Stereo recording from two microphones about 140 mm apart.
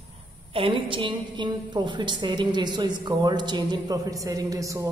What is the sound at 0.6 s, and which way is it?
A woman's voice, 40° right (ahead or behind).